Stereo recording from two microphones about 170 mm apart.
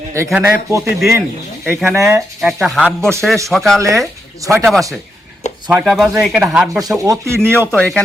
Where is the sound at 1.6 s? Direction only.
Centre (ahead or behind).